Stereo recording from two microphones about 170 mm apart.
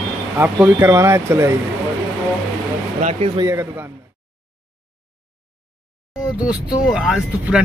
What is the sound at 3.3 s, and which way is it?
Speech, 20° right (ahead or behind).